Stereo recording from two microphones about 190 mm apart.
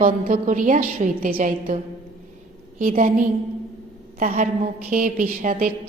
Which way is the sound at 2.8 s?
45° right (ahead or behind).